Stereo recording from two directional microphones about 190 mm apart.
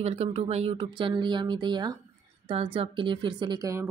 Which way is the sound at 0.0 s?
35° right (ahead or behind).